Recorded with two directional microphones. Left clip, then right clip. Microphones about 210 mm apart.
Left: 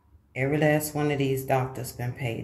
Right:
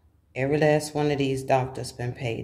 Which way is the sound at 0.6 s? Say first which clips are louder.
Right 2 dB; 10° right (ahead or behind).